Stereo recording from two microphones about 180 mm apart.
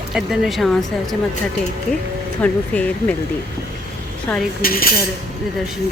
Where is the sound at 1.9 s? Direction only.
5° left (ahead or behind).